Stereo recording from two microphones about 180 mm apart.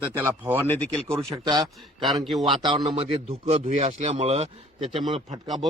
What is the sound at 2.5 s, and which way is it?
A man's voice, 25° right (ahead or behind).